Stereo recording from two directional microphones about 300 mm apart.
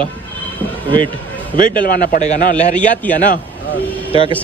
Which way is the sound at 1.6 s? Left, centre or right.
Left.